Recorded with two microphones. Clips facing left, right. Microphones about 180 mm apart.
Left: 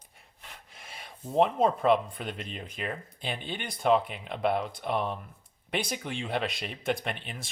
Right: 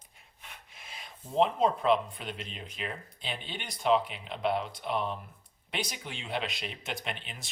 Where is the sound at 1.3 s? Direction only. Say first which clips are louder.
Left 2 dB; 50° left (ahead or behind).